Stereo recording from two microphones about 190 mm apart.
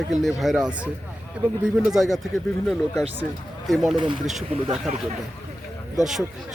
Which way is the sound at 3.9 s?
25° right (ahead or behind).